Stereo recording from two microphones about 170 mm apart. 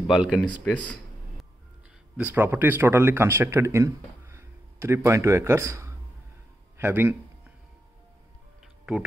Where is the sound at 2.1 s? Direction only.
10° right (ahead or behind).